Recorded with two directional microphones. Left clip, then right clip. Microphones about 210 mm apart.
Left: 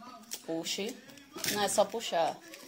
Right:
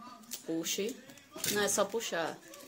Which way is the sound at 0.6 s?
20° right (ahead or behind).